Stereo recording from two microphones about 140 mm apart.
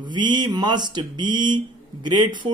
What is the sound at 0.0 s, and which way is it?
Speech, 30° right (ahead or behind).